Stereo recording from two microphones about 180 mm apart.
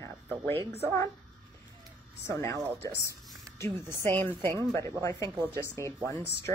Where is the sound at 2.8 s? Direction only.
15° left (ahead or behind).